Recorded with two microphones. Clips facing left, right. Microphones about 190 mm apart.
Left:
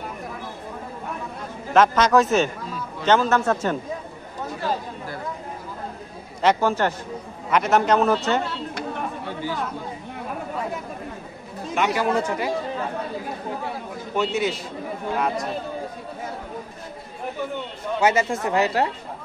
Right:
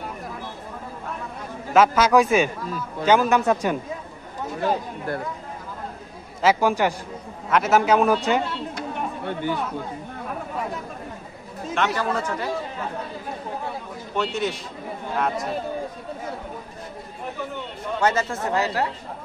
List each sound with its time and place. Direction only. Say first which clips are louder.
1.7 s a man's voice: even; 5° right (ahead or behind)
4.6 s a sound: right 4 dB; 55° right (ahead or behind)
6.4 s a man's voice: even; 10° right (ahead or behind)
9.2 s speech: right 3 dB; 60° right (ahead or behind)
11.6 s chatter: left 1 dB; 5° left (ahead or behind)
11.9 s speech: left 3 dB; 15° left (ahead or behind)
14.1 s a man's voice: left 2 dB; 5° left (ahead or behind)
18.0 s speech: left 2 dB; 15° left (ahead or behind)